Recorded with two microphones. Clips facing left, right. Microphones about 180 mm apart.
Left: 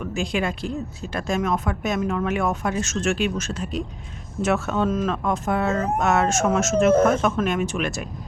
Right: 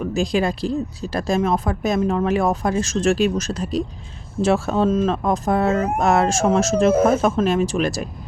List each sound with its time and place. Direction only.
0.0 s speech: 35° right (ahead or behind)